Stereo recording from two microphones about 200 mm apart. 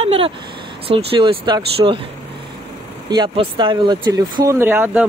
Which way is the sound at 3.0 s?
20° right (ahead or behind).